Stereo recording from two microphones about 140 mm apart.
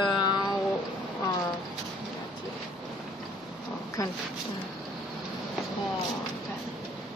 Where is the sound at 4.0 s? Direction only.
25° left (ahead or behind).